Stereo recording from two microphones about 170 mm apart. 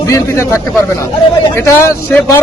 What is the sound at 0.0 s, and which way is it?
A man's voice, 20° left (ahead or behind).